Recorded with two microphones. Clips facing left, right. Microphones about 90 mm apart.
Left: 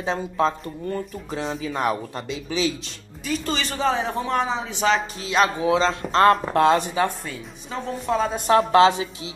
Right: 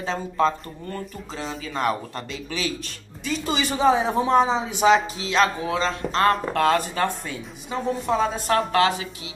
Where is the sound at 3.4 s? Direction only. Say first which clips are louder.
Right 5 dB; 10° right (ahead or behind).